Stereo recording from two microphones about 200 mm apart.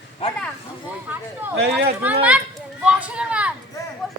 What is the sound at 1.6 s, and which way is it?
Speech, 55° right (ahead or behind).